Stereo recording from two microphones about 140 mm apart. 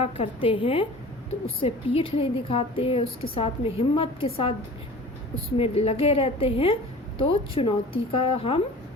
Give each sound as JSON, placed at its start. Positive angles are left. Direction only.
{"t": 0.0, "sound": "a woman's voice", "side_deg": 40}
{"t": 5.5, "sound": "a woman's voice", "side_deg": 45}